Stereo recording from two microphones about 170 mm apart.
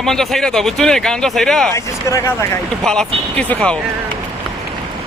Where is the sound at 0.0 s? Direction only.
Centre (ahead or behind).